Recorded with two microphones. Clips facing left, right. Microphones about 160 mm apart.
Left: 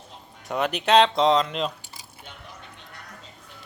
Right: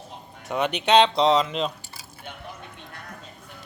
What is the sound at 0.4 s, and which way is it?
Speech, centre (ahead or behind).